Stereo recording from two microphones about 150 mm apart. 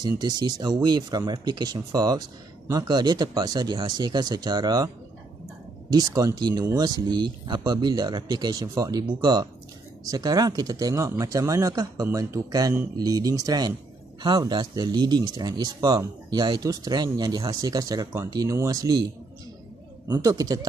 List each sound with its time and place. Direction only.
0.0 s speech: 25° right (ahead or behind)
5.9 s speech: 25° right (ahead or behind)
20.1 s speech: 25° right (ahead or behind)